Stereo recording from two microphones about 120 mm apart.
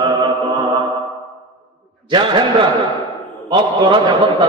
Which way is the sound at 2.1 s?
40° right (ahead or behind).